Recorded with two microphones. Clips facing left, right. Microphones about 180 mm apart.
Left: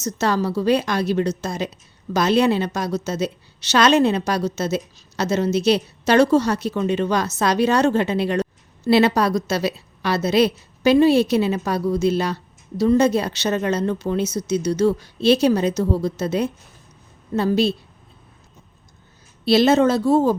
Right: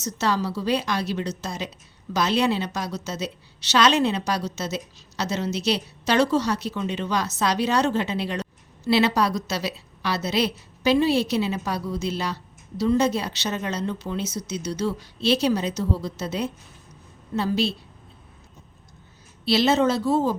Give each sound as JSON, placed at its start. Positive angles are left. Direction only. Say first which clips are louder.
{"t": 0.0, "sound": "a woman's voice", "louder": "left 4 dB", "side_deg": 50}
{"t": 19.5, "sound": "a woman's voice", "louder": "left 5 dB", "side_deg": 50}